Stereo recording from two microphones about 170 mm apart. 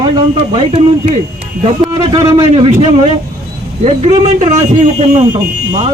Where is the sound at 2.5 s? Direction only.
40° right (ahead or behind).